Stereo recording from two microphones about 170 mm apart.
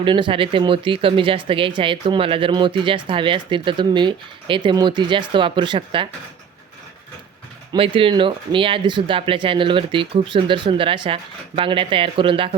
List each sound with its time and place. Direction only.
0.0 s speech: 30° right (ahead or behind)
7.7 s speech: 30° right (ahead or behind)